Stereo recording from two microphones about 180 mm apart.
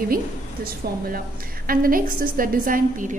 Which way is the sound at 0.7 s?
55° right (ahead or behind).